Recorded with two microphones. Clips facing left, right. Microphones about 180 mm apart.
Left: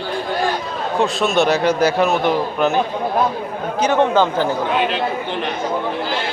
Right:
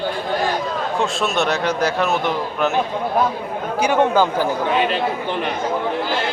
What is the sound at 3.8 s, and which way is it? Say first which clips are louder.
Speech: left 1 dB; 10° right (ahead or behind).